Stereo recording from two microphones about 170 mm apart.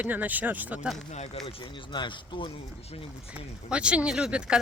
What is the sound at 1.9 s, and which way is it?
Speech, 25° left (ahead or behind).